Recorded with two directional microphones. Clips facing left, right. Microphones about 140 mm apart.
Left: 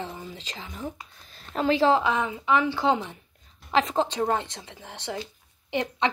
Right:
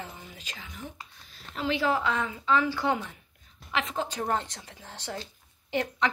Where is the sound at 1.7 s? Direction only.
30° left (ahead or behind).